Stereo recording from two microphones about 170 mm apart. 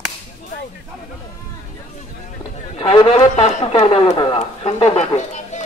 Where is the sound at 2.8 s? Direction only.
30° left (ahead or behind); by 5.7 s 45° left (ahead or behind).